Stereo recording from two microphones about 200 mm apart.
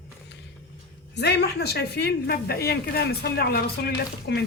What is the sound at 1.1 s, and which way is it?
A woman's voice, 55° left (ahead or behind).